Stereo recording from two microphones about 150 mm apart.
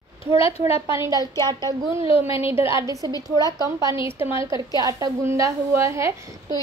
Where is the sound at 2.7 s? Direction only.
20° right (ahead or behind).